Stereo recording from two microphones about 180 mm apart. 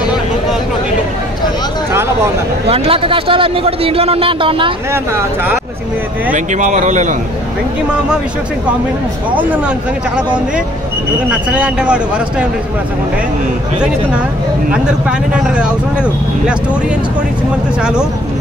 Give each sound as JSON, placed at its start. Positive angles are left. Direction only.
{"t": 2.7, "sound": "a man's voice", "side_deg": -30}
{"t": 4.9, "sound": "speech", "side_deg": -10}
{"t": 6.3, "sound": "speech", "side_deg": -45}
{"t": 9.3, "sound": "speech", "side_deg": -10}
{"t": 13.7, "sound": "speech", "side_deg": -5}